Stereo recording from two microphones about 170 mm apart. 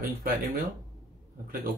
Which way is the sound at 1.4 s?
60° right (ahead or behind).